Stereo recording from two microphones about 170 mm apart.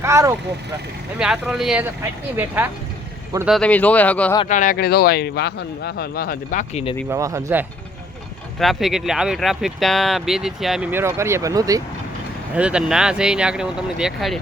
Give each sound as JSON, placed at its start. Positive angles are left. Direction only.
{"t": 0.0, "sound": "vehicle", "side_deg": -15}
{"t": 1.2, "sound": "speech", "side_deg": -5}
{"t": 3.4, "sound": "speech", "side_deg": 5}
{"t": 4.4, "sound": "a man's voice", "side_deg": 50}
{"t": 7.1, "sound": "speech", "side_deg": -20}
{"t": 8.5, "sound": "speech", "side_deg": 0}
{"t": 10.9, "sound": "speech", "side_deg": -15}
{"t": 12.5, "sound": "speech", "side_deg": -5}